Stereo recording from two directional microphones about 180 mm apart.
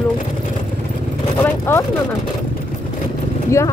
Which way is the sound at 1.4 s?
15° left (ahead or behind).